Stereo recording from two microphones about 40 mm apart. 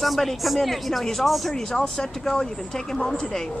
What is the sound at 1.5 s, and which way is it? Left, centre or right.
Speech, centre.